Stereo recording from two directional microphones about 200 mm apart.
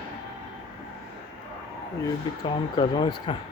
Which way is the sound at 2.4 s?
20° left (ahead or behind).